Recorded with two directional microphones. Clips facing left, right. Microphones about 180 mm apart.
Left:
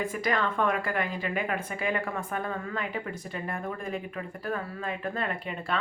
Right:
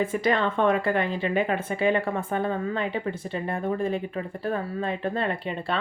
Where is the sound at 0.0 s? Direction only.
25° right (ahead or behind).